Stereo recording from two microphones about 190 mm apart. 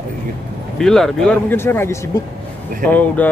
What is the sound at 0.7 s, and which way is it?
Speech, centre (ahead or behind).